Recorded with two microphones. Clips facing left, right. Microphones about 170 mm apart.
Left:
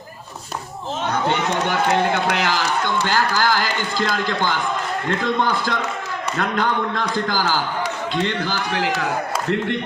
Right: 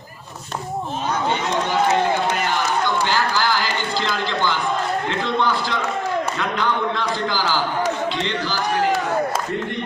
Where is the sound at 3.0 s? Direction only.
50° left (ahead or behind).